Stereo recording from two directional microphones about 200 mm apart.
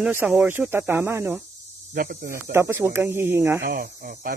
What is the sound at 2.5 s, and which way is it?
Speech, 10° right (ahead or behind).